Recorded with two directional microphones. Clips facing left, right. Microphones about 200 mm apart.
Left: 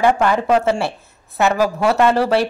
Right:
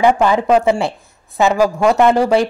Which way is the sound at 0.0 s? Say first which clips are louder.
Right 3 dB; 15° right (ahead or behind).